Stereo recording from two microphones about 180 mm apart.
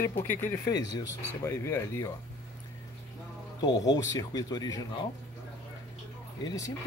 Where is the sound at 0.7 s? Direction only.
20° left (ahead or behind).